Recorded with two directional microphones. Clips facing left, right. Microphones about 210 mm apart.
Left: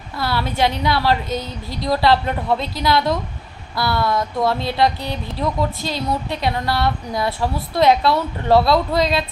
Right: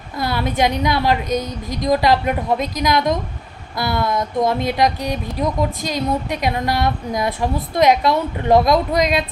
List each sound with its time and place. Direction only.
0.2 s speech: 20° right (ahead or behind)